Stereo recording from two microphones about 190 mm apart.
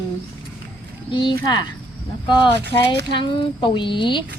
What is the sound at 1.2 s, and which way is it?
Speech, 25° left (ahead or behind).